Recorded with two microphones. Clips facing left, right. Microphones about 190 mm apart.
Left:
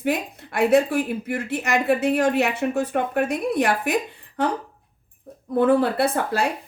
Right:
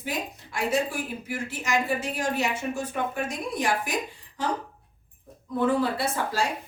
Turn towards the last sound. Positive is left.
turn(degrees=60)  # may be behind; listen again after turning